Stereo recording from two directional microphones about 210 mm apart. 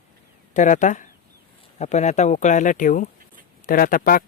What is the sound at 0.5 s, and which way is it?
Speech, 35° left (ahead or behind).